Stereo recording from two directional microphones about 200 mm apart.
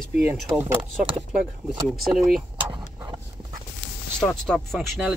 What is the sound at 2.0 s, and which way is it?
Speech, centre (ahead or behind).